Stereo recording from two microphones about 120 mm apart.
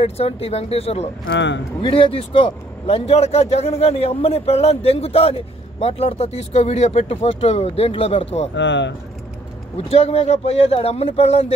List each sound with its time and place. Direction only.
0.0 s speech: 60° left (ahead or behind)
9.8 s speech: 60° left (ahead or behind)